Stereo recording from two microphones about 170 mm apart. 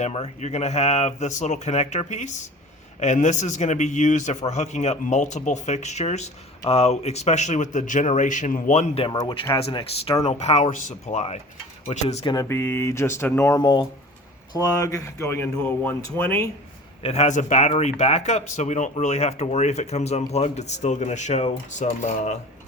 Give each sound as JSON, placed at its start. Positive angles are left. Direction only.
{"t": 0.0, "sound": "a man's voice", "side_deg": 40}
{"t": 12.2, "sound": "speech", "side_deg": 20}
{"t": 17.0, "sound": "a man's voice", "side_deg": 40}